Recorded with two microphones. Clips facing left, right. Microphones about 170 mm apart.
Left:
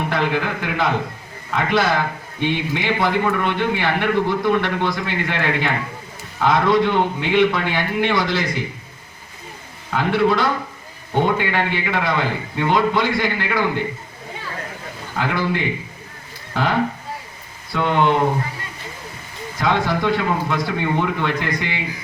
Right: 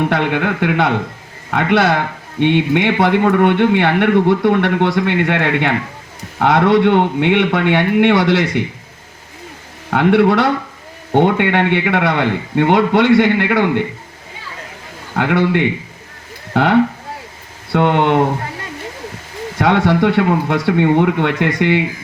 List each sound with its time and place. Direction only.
0.1 s speech: 65° right (ahead or behind)
9.9 s speech: 65° right (ahead or behind)
15.1 s speech: 65° right (ahead or behind)
19.5 s speech: 70° right (ahead or behind)